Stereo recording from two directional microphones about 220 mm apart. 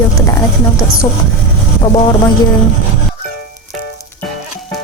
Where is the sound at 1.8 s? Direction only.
20° left (ahead or behind).